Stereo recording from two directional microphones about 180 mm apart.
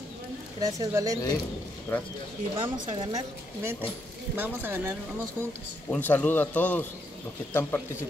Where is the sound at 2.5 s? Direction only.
25° right (ahead or behind).